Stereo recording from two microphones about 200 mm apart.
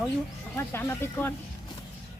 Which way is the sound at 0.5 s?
10° left (ahead or behind).